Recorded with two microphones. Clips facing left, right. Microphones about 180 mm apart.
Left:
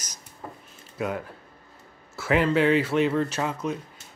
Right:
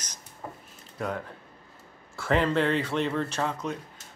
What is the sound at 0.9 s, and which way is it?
Speech, 5° left (ahead or behind).